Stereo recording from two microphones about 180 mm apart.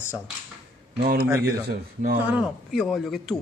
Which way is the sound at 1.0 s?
55° right (ahead or behind).